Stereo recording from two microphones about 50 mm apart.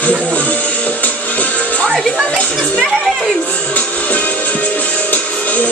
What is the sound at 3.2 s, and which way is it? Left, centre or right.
Music, centre.